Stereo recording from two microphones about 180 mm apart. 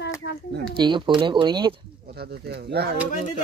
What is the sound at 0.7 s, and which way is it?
Speech, 25° right (ahead or behind).